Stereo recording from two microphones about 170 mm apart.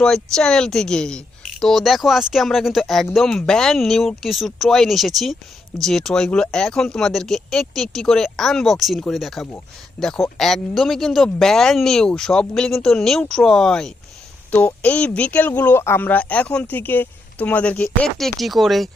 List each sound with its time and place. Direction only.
0.0 s speech: 5° left (ahead or behind)